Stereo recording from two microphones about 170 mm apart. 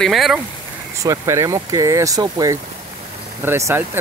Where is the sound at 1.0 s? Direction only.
20° right (ahead or behind).